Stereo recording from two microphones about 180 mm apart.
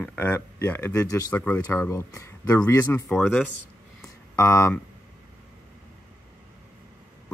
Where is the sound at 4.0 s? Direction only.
15° left (ahead or behind).